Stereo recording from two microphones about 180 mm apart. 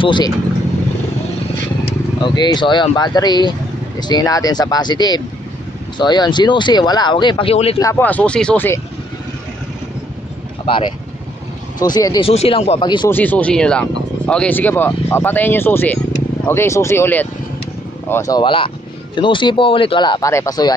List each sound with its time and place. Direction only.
0.0 s speech: 25° left (ahead or behind)
2.2 s speech: 25° left (ahead or behind)
7.8 s speech: 10° left (ahead or behind)
11.8 s speech: 20° left (ahead or behind)
12.3 s speech: 35° left (ahead or behind)
13.1 s speech: 10° left (ahead or behind)